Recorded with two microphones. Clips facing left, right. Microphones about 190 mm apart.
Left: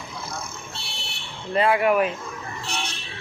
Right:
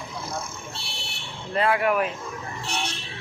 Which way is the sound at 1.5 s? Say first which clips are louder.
Left 3 dB; 5° left (ahead or behind).